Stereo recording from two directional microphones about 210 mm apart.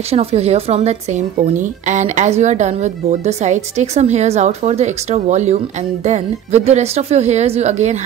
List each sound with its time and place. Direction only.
0.1 s speech: 30° right (ahead or behind)